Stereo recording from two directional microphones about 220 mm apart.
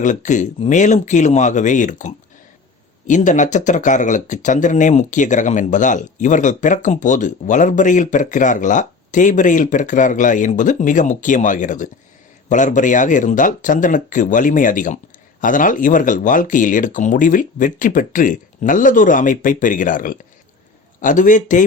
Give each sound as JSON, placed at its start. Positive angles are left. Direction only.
{"t": 0.0, "sound": "speech", "side_deg": 35}